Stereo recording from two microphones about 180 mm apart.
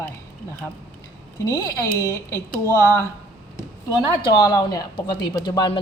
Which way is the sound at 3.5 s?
20° left (ahead or behind).